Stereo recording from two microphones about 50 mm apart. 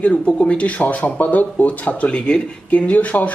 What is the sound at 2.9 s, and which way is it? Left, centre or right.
Speech, left.